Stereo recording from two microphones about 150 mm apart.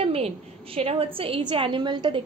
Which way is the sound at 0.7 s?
40° right (ahead or behind).